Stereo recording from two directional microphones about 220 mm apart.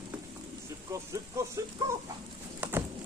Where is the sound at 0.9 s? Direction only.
15° right (ahead or behind).